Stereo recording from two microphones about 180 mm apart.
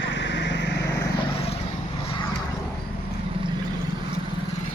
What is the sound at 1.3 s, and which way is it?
Vehicle, 35° left (ahead or behind).